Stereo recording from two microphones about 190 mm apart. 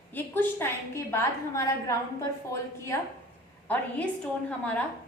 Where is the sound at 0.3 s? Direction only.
15° left (ahead or behind).